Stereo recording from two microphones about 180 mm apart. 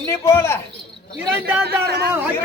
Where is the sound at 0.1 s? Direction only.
15° left (ahead or behind).